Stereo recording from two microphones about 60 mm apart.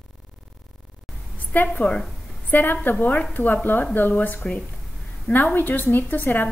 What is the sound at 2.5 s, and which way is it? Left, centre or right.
Speech, left.